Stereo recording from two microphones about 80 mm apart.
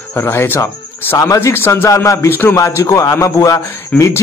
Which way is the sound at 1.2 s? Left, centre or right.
Left.